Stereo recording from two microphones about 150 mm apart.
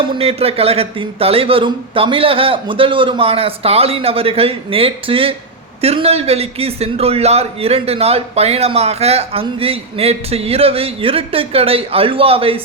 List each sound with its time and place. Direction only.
0.1 s a man's voice: 40° right (ahead or behind)